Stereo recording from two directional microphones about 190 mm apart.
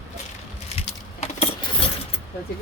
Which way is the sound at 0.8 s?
30° left (ahead or behind).